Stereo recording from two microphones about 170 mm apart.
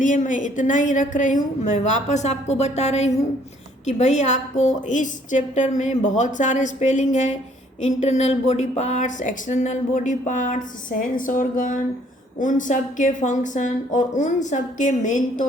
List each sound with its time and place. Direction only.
0.0 s speech: 50° left (ahead or behind)